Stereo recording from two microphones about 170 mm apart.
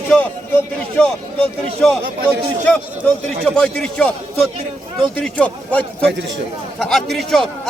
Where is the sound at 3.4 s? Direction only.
5° left (ahead or behind).